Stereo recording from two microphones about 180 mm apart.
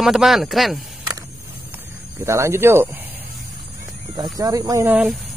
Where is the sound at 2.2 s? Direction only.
15° right (ahead or behind).